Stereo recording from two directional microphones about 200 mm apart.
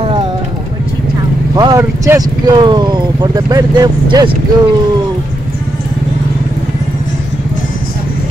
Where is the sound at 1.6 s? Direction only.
15° right (ahead or behind).